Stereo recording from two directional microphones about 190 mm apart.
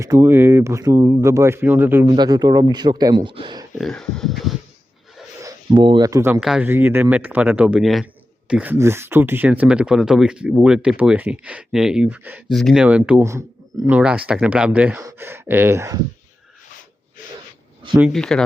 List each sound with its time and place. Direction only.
0.0 s speech: 15° right (ahead or behind)
2.0 s speech: 20° right (ahead or behind)
3.8 s speech: centre (ahead or behind)
5.4 s speech: 20° right (ahead or behind)
6.4 s speech: 5° right (ahead or behind)
18.1 s speech: 5° left (ahead or behind)